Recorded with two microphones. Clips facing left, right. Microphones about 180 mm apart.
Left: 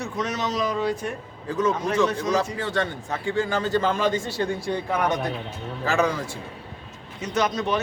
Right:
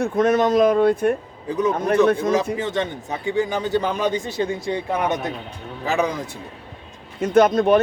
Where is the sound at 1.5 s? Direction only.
15° right (ahead or behind).